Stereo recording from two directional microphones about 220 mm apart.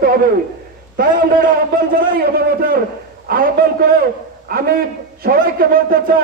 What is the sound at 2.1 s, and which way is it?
A man's voice, 40° right (ahead or behind).